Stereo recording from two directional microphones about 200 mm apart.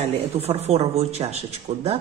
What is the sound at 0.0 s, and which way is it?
A man's voice, 30° right (ahead or behind).